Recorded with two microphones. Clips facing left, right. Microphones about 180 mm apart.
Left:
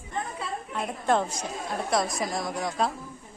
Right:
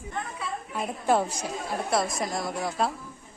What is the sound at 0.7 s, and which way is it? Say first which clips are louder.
A woman's voice: right 1 dB; 5° right (ahead or behind).